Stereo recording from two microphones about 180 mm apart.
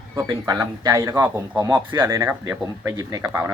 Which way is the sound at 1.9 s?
10° right (ahead or behind).